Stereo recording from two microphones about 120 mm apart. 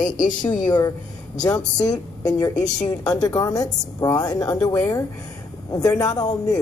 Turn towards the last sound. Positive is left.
turn(degrees=30)  # may be behind; listen again after turning